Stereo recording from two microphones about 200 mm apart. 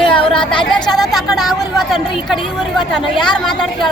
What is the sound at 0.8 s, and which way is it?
Speech, 20° left (ahead or behind).